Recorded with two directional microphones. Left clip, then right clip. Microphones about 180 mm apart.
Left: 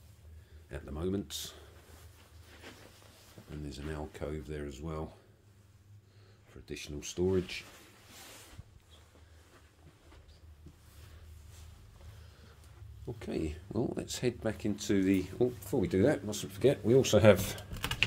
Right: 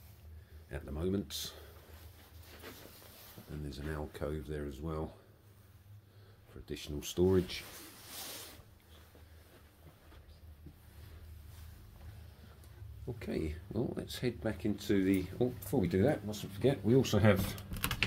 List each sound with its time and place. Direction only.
0.7 s speech: 10° left (ahead or behind)
3.6 s speech: 10° left (ahead or behind)
6.6 s speech: 5° right (ahead or behind)
7.0 s speech: 15° right (ahead or behind)
13.0 s speech: 20° left (ahead or behind)
15.6 s speech: 10° left (ahead or behind)
16.3 s speech: 25° left (ahead or behind)